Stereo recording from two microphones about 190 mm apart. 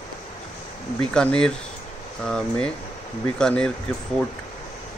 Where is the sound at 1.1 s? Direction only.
5° left (ahead or behind).